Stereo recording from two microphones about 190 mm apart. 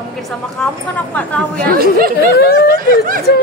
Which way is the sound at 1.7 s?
50° right (ahead or behind).